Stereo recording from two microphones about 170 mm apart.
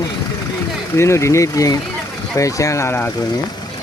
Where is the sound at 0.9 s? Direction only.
15° left (ahead or behind).